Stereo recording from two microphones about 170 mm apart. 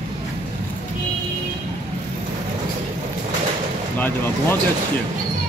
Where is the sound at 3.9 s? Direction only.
10° left (ahead or behind).